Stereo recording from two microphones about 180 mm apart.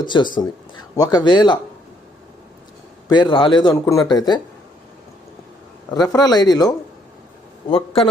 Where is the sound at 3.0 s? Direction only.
25° left (ahead or behind).